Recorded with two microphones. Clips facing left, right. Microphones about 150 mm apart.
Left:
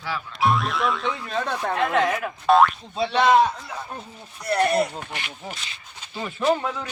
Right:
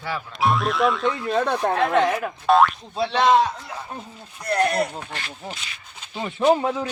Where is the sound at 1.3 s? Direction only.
55° right (ahead or behind).